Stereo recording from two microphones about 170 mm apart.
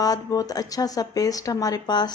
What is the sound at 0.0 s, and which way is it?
Speech, 20° left (ahead or behind).